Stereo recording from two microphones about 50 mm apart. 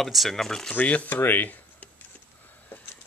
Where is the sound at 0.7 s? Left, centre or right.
Left.